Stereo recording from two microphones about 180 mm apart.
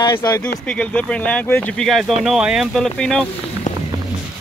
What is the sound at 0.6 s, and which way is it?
Speech, 5° left (ahead or behind).